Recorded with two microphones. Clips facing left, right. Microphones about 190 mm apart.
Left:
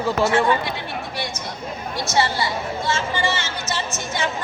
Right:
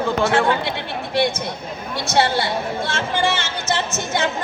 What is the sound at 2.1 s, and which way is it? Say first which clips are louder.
Speech: right 3 dB; 60° right (ahead or behind).